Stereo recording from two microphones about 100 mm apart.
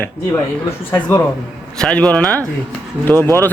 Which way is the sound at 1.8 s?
10° left (ahead or behind).